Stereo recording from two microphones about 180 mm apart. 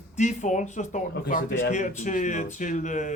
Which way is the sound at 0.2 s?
45° left (ahead or behind).